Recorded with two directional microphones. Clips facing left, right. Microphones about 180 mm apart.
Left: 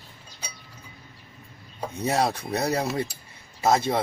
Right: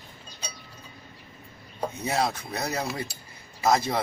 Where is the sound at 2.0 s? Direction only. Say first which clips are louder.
Left 4 dB; 35° left (ahead or behind).